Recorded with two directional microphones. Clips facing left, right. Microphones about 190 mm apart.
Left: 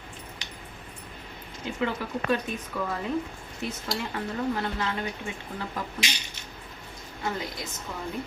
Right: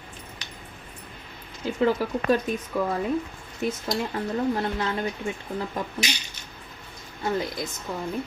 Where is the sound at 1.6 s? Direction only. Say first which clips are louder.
Right 7 dB; 35° right (ahead or behind).